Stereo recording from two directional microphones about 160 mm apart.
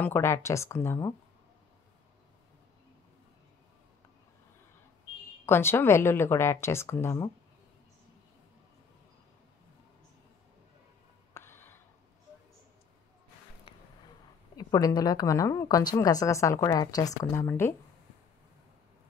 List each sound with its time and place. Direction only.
0.0 s speech: 15° left (ahead or behind)
5.4 s speech: 15° left (ahead or behind)
11.3 s a sound: 15° left (ahead or behind)
14.6 s a woman's voice: 20° left (ahead or behind)